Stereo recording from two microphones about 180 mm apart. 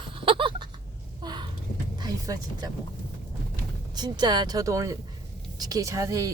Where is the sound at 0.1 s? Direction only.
30° right (ahead or behind).